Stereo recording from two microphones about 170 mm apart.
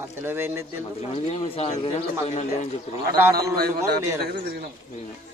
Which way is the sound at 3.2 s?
20° right (ahead or behind).